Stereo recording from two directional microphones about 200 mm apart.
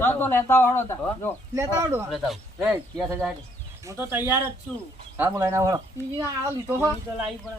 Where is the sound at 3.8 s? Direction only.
15° right (ahead or behind).